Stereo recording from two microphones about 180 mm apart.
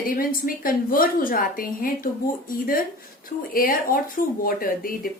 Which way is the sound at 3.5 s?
50° left (ahead or behind).